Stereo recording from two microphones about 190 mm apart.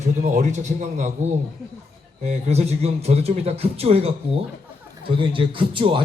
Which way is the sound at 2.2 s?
35° right (ahead or behind).